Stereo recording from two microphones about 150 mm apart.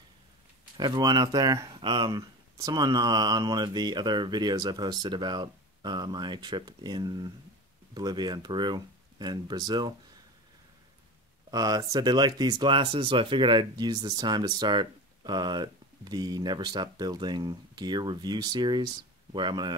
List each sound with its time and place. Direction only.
0.7 s speech: 25° right (ahead or behind)
11.5 s speech: 25° right (ahead or behind)